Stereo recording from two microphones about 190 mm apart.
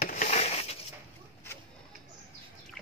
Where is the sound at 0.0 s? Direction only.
40° left (ahead or behind).